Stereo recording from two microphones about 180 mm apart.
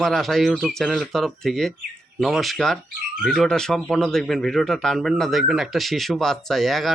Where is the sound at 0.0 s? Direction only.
Centre (ahead or behind).